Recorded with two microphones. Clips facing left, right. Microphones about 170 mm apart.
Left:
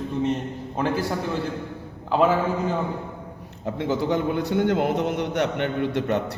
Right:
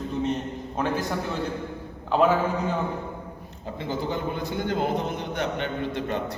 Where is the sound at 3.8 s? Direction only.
70° left (ahead or behind).